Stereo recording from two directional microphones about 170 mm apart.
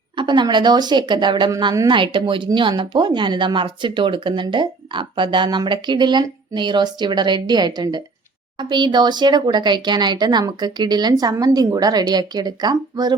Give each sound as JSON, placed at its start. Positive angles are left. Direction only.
{"t": 0.2, "sound": "a woman's voice", "side_deg": -25}